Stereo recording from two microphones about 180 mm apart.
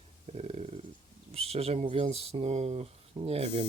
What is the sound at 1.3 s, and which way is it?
Speech, 35° right (ahead or behind).